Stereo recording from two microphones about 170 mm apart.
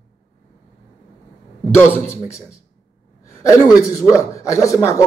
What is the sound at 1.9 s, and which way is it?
Speech, 15° left (ahead or behind).